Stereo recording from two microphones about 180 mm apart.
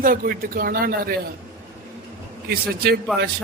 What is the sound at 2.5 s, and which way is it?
Speech, 60° right (ahead or behind).